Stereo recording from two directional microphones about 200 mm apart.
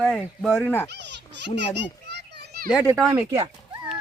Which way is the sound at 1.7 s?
60° right (ahead or behind).